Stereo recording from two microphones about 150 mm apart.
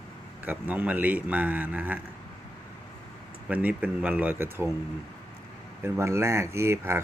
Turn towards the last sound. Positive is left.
turn(degrees=-15)  # may be behind; listen again after turning